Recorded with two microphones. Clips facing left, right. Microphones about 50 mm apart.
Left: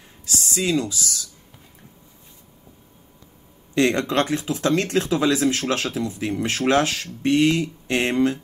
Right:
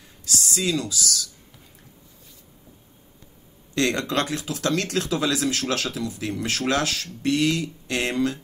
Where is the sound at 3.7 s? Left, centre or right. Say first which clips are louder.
Left 4 dB; left.